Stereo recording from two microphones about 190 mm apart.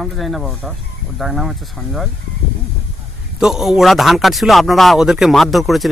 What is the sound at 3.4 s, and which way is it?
A man's voice, centre (ahead or behind).